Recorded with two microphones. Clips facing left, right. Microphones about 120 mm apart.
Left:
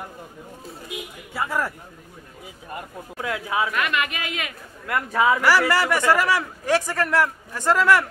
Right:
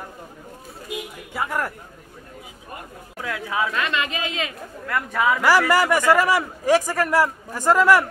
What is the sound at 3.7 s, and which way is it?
Speech, 25° right (ahead or behind).